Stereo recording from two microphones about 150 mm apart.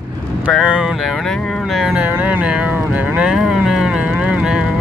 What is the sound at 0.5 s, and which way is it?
Speech, 5° right (ahead or behind).